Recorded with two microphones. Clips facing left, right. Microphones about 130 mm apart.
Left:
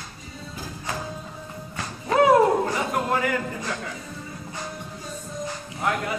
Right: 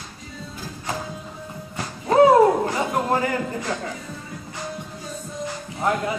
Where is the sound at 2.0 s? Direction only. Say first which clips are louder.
Right 3 dB; 30° right (ahead or behind).